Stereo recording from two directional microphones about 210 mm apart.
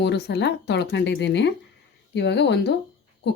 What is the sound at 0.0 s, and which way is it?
Speech, 55° left (ahead or behind).